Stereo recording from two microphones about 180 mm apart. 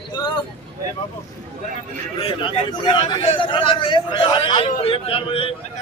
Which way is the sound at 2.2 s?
30° left (ahead or behind).